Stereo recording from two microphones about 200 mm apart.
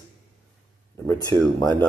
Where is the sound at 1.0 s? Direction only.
20° left (ahead or behind).